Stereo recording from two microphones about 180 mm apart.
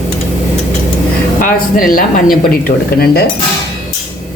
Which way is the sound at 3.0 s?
60° left (ahead or behind).